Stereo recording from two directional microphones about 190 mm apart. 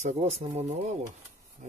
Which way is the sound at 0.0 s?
35° right (ahead or behind).